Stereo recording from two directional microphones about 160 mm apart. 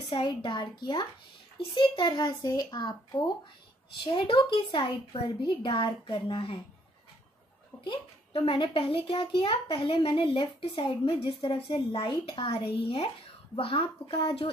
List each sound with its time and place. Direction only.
0.1 s a child's voice: 30° left (ahead or behind)
7.8 s a child's voice: 35° left (ahead or behind)